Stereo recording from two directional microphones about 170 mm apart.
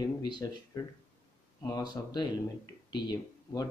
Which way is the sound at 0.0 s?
25° left (ahead or behind).